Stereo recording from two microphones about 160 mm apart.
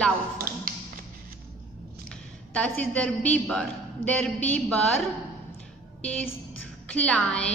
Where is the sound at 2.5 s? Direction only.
5° left (ahead or behind).